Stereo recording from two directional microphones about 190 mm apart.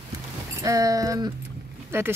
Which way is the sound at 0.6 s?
20° right (ahead or behind).